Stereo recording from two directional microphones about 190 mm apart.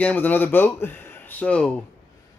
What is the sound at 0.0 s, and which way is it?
Speech, 10° left (ahead or behind).